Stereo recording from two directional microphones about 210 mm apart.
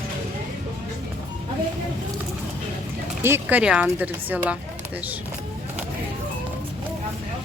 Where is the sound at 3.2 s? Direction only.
10° right (ahead or behind).